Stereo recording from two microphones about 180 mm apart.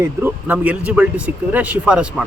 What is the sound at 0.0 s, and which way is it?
Speech, 10° right (ahead or behind).